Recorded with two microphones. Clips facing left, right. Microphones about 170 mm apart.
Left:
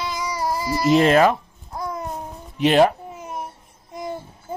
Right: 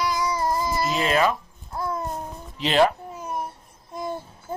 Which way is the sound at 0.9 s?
55° left (ahead or behind).